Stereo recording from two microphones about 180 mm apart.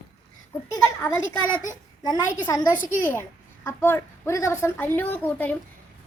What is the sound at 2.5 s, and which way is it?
A woman's voice, 20° left (ahead or behind).